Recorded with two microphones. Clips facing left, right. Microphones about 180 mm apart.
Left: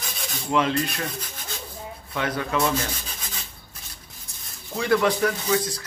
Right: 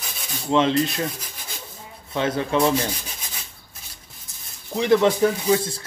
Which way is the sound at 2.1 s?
25° right (ahead or behind).